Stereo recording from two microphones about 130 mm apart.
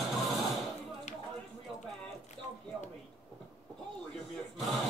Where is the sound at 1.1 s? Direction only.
70° left (ahead or behind).